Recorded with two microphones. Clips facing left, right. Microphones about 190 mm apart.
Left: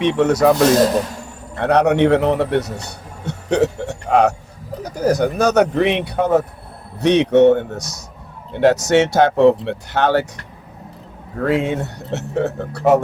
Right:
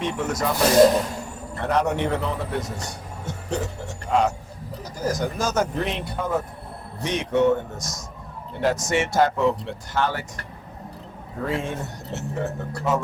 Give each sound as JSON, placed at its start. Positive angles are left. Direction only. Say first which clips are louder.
{"t": 0.0, "sound": "speech", "louder": "left 11 dB", "side_deg": 70}
{"t": 1.5, "sound": "a man's voice", "louder": "left 8 dB", "side_deg": 70}
{"t": 11.3, "sound": "speech", "louder": "left 9 dB", "side_deg": 70}